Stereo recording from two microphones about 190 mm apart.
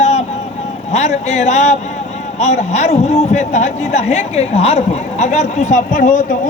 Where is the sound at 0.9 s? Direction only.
35° left (ahead or behind).